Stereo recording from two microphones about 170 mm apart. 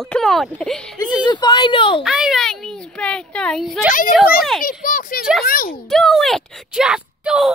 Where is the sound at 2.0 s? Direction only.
Centre (ahead or behind).